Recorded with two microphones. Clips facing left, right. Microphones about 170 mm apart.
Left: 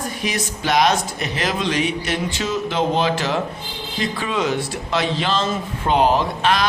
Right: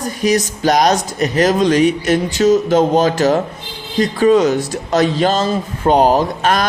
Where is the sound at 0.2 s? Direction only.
40° right (ahead or behind).